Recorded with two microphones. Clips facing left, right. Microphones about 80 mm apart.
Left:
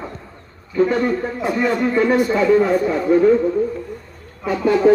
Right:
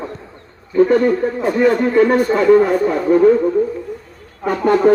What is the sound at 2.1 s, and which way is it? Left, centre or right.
Speech, right.